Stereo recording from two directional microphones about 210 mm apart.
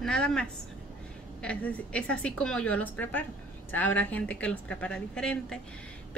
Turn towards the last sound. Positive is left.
turn(degrees=5)  # may be behind; listen again after turning